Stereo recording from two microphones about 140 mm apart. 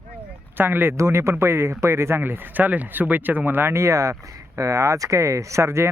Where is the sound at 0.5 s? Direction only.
15° right (ahead or behind).